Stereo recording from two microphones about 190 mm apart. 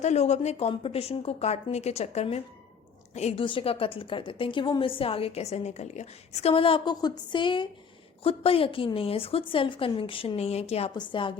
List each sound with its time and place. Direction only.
0.0 s a woman's voice: 35° left (ahead or behind)